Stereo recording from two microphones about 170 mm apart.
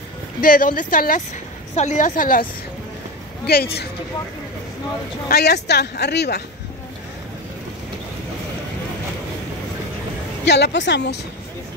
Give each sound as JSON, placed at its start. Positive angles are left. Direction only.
{"t": 0.4, "sound": "speech", "side_deg": 55}
{"t": 3.5, "sound": "speech", "side_deg": 65}
{"t": 5.3, "sound": "a woman's voice", "side_deg": 75}
{"t": 10.4, "sound": "a woman's voice", "side_deg": 90}